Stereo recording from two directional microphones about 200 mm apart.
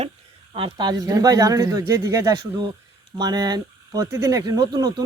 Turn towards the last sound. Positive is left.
turn(degrees=-20)  # may be behind; listen again after turning